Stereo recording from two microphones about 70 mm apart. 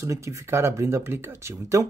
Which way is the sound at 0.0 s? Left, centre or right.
Right.